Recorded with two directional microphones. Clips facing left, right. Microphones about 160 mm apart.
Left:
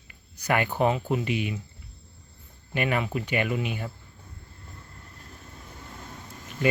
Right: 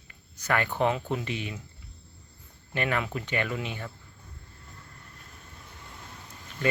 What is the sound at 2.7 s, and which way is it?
Speech, 15° left (ahead or behind).